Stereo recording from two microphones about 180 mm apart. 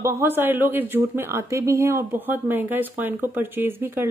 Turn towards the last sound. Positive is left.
turn(degrees=-10)  # may be behind; listen again after turning